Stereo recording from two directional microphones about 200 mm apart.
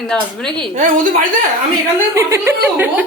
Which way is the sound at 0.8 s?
45° right (ahead or behind).